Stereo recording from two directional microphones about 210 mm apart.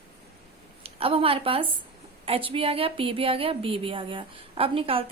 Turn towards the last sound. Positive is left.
turn(degrees=-25)  # may be behind; listen again after turning